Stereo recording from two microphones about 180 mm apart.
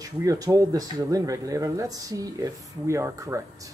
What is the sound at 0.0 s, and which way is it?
Speech, 20° right (ahead or behind).